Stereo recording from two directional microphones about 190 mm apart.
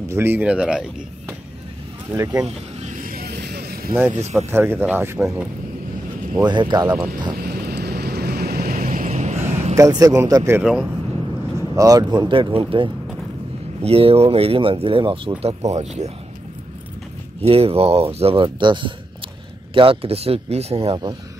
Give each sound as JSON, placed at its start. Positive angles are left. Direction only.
{"t": 0.1, "sound": "speech", "side_deg": -10}
{"t": 2.4, "sound": "vehicle", "side_deg": -40}
{"t": 4.1, "sound": "speech", "side_deg": -35}
{"t": 4.5, "sound": "speech", "side_deg": -10}
{"t": 6.3, "sound": "speech", "side_deg": -25}
{"t": 7.3, "sound": "vehicle", "side_deg": -55}
{"t": 9.8, "sound": "speech", "side_deg": -20}
{"t": 10.6, "sound": "speech", "side_deg": 0}
{"t": 11.7, "sound": "speech", "side_deg": -20}
{"t": 17.4, "sound": "speech", "side_deg": -30}